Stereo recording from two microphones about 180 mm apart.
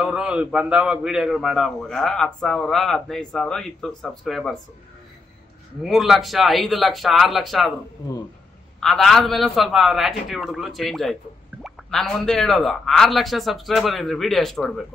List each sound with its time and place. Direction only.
0.0 s a man's voice: 5° right (ahead or behind)
5.8 s a man's voice: centre (ahead or behind)
8.7 s a man's voice: centre (ahead or behind)